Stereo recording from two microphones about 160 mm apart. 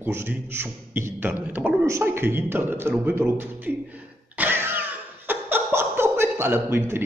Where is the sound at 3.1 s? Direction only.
15° right (ahead or behind).